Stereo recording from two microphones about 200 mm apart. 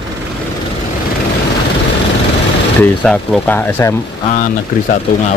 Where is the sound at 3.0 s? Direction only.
5° left (ahead or behind).